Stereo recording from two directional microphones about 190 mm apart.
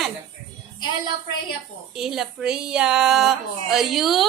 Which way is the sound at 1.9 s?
Centre (ahead or behind).